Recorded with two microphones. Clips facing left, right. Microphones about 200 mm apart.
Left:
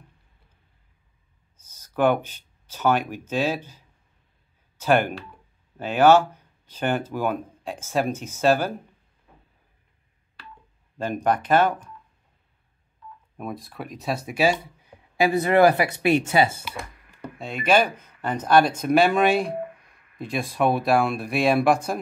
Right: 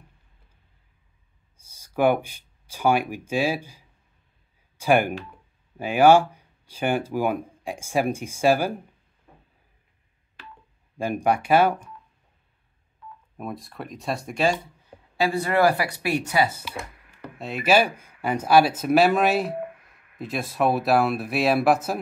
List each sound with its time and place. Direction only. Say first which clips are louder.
1.6 s speech: even; 10° right (ahead or behind)
11.0 s speech: right 1 dB; 10° right (ahead or behind)
13.4 s speech: left 1 dB; centre (ahead or behind)
15.1 s speech: left 4 dB; 20° left (ahead or behind)
17.4 s speech: even; 5° right (ahead or behind)